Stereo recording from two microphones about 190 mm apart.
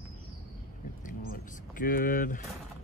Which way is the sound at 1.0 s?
45° left (ahead or behind).